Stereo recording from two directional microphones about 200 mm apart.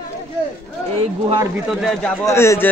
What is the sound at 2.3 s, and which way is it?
Speech, 15° left (ahead or behind).